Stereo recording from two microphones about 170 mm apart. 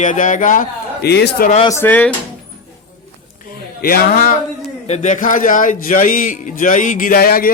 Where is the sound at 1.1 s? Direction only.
70° left (ahead or behind).